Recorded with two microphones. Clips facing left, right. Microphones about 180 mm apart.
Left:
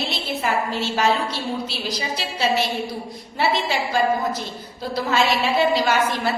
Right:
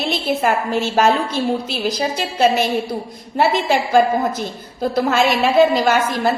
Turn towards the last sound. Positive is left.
turn(degrees=-45)  # may be behind; listen again after turning